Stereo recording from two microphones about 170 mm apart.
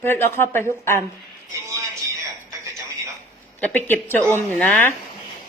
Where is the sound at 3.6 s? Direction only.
10° left (ahead or behind).